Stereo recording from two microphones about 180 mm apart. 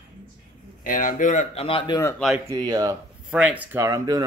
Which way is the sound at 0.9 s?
50° left (ahead or behind).